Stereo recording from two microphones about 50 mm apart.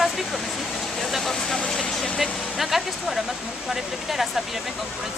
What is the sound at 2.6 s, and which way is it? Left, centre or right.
Speech, centre.